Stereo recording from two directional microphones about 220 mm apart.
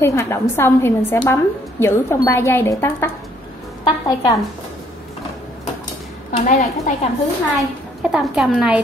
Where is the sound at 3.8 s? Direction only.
20° left (ahead or behind).